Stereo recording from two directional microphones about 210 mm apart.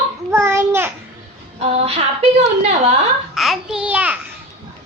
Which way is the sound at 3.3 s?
Centre (ahead or behind).